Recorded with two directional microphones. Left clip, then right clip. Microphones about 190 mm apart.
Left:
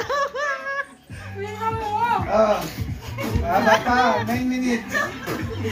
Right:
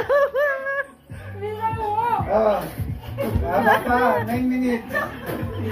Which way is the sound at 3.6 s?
20° right (ahead or behind).